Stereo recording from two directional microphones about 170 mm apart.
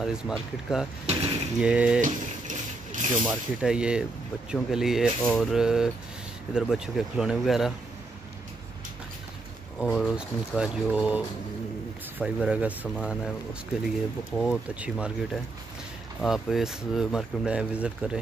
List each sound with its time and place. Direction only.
0.0 s speech: 5° right (ahead or behind)
2.0 s mechanisms: 50° right (ahead or behind)
3.3 s speech: 5° right (ahead or behind)
9.8 s speech: 5° right (ahead or behind)